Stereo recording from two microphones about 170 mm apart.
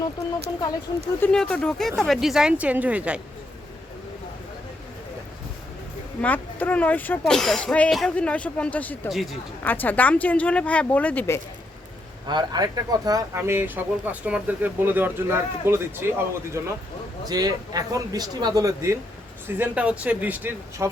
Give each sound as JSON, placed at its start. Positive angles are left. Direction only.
{"t": 1.2, "sound": "speech", "side_deg": 5}
{"t": 6.2, "sound": "speech", "side_deg": 10}
{"t": 12.3, "sound": "speech", "side_deg": -25}